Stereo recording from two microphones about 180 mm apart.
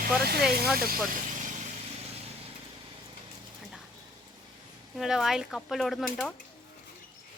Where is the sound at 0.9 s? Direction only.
45° right (ahead or behind).